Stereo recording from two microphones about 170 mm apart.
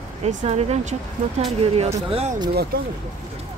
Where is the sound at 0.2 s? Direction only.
40° right (ahead or behind).